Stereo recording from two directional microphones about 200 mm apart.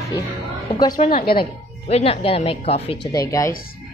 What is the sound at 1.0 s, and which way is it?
Speech, 35° left (ahead or behind).